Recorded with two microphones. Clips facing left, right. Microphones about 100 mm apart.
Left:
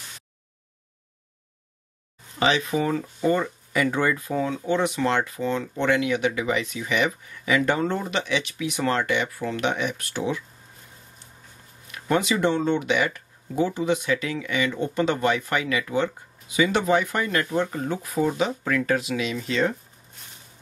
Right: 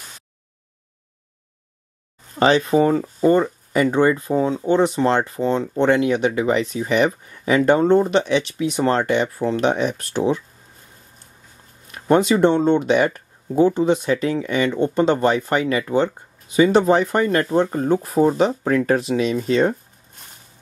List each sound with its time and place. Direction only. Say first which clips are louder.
2.3 s speech: right 7 dB; 40° right (ahead or behind)
11.9 s speech: right 7 dB; 40° right (ahead or behind)